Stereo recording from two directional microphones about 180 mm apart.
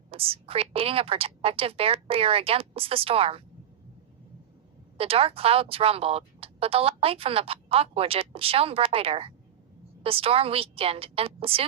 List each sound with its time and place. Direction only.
0.1 s a woman's voice: 30° right (ahead or behind)
4.9 s a woman's voice: 30° right (ahead or behind)